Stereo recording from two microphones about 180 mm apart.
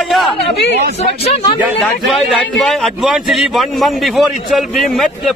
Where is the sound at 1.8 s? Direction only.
Centre (ahead or behind).